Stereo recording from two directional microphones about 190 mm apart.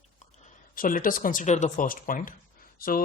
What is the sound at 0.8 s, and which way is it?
A man's voice, 45° left (ahead or behind).